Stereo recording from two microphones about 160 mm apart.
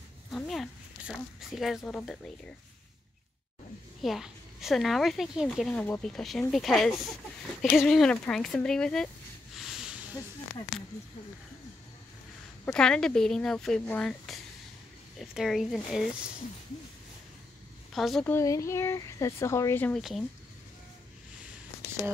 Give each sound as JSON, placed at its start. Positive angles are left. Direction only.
{"t": 0.3, "sound": "speech", "side_deg": 0}
{"t": 4.0, "sound": "a woman's voice", "side_deg": 0}
{"t": 9.6, "sound": "a sound", "side_deg": -5}
{"t": 12.7, "sound": "a woman's voice", "side_deg": 5}
{"t": 17.9, "sound": "a woman's voice", "side_deg": 0}
{"t": 18.2, "sound": "speech", "side_deg": 20}
{"t": 20.0, "sound": "a woman's voice", "side_deg": 0}